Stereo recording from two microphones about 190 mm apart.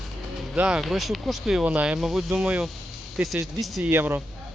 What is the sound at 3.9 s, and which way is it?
Speech, 10° right (ahead or behind).